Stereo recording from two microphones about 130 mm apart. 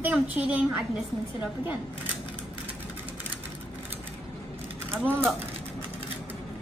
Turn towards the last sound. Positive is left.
turn(degrees=-15)  # may be behind; listen again after turning